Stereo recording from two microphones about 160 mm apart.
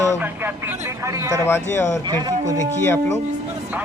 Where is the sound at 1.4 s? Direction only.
15° left (ahead or behind).